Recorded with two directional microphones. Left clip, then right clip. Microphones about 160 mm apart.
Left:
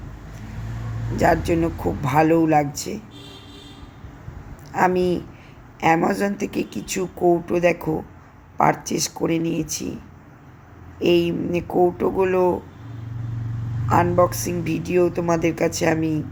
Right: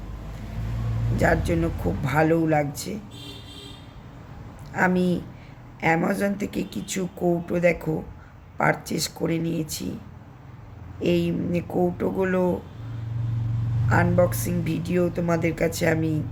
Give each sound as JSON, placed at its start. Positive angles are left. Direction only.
{"t": 1.1, "sound": "a woman's voice", "side_deg": 20}
{"t": 4.7, "sound": "a woman's voice", "side_deg": 20}
{"t": 11.0, "sound": "a woman's voice", "side_deg": 15}
{"t": 13.9, "sound": "a woman's voice", "side_deg": 20}